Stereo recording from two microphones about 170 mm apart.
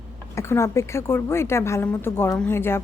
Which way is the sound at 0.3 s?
15° left (ahead or behind).